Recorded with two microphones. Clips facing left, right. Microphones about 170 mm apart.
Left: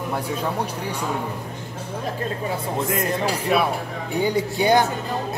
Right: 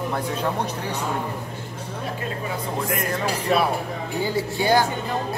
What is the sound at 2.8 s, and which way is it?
Speech, 25° left (ahead or behind).